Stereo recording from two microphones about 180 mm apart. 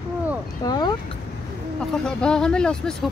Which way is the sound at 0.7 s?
20° left (ahead or behind).